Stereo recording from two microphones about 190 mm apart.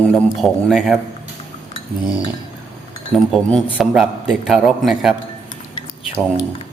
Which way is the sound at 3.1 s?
Centre (ahead or behind).